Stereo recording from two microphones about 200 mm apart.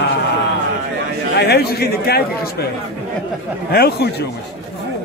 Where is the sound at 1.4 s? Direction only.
55° left (ahead or behind).